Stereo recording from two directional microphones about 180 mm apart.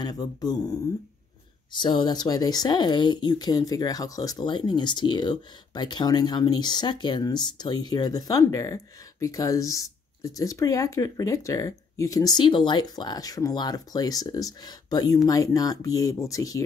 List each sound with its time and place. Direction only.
0.0 s speech: 20° left (ahead or behind)